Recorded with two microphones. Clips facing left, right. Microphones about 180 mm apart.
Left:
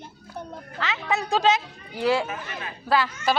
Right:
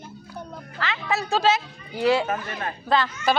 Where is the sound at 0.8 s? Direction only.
Centre (ahead or behind).